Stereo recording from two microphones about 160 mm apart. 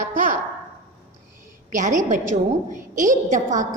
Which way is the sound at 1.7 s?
50° right (ahead or behind).